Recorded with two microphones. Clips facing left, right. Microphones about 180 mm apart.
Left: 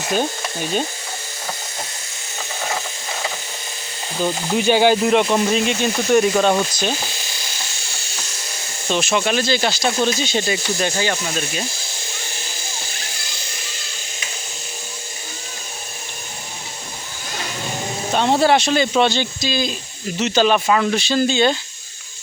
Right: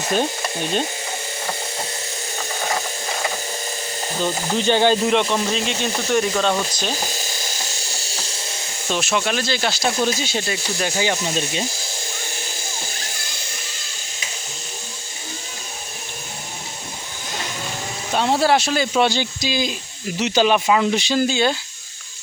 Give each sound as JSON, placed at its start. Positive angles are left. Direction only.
{"t": 0.6, "sound": "speech", "side_deg": 5}
{"t": 4.2, "sound": "speech", "side_deg": 10}
{"t": 7.1, "sound": "helicopter", "side_deg": -45}
{"t": 8.9, "sound": "speech", "side_deg": 0}
{"t": 18.1, "sound": "speech", "side_deg": 0}